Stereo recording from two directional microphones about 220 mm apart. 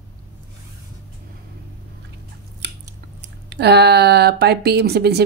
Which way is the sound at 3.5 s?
50° right (ahead or behind).